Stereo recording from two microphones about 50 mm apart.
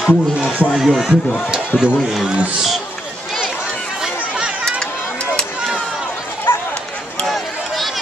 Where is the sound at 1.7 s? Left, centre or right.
Left.